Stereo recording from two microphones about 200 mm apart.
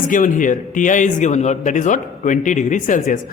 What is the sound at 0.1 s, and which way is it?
A man's voice, 40° left (ahead or behind).